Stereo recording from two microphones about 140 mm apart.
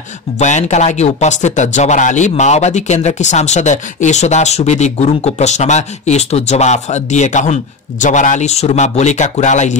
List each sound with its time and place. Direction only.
0.4 s speech: 55° left (ahead or behind)